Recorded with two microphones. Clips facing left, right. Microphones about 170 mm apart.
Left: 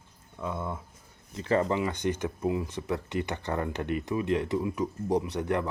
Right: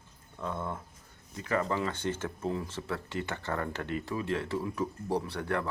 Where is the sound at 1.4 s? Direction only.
25° left (ahead or behind).